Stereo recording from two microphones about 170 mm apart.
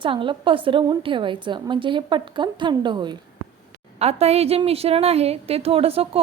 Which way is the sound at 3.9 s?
40° right (ahead or behind).